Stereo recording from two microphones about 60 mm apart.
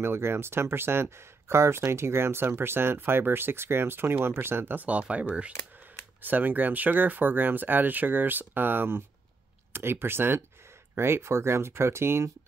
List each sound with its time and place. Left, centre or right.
0.0 s speech: right
4.8 s speech: right